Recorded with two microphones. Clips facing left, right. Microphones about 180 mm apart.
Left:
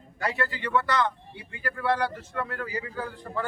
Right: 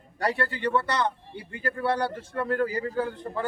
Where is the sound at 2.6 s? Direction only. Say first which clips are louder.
Right 6 dB; 40° right (ahead or behind).